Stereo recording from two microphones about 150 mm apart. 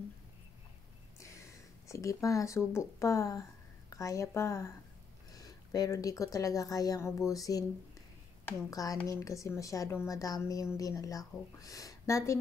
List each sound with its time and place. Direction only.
1.9 s a woman's voice: 20° left (ahead or behind)
8.6 s a woman's voice: 25° left (ahead or behind)